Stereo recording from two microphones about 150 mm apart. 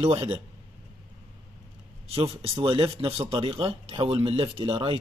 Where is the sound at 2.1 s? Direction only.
40° right (ahead or behind).